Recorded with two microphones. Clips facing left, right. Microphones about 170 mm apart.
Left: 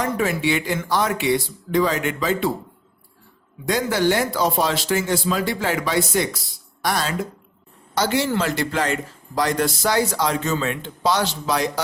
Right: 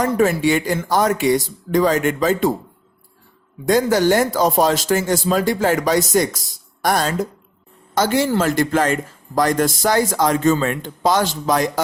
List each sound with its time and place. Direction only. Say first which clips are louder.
0.0 s a man's voice: right 5 dB; 45° right (ahead or behind)
3.7 s a man's voice: right 5 dB; 45° right (ahead or behind)